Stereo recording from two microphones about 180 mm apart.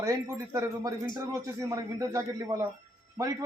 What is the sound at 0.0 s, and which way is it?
A man's voice, 15° right (ahead or behind).